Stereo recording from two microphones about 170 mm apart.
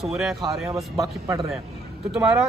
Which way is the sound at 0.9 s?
20° right (ahead or behind).